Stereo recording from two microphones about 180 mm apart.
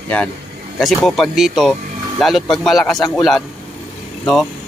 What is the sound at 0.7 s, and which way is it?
Speech, centre (ahead or behind).